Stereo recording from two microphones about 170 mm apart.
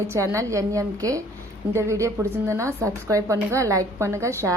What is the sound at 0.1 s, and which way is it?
A woman's voice, 15° right (ahead or behind).